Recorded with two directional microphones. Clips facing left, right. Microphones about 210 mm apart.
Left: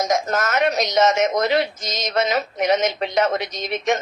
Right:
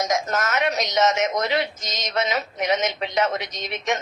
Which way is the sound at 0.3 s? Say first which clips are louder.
Left 3 dB; 50° left (ahead or behind).